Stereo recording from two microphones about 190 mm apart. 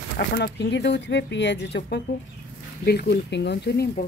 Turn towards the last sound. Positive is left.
turn(degrees=60)  # may be behind; listen again after turning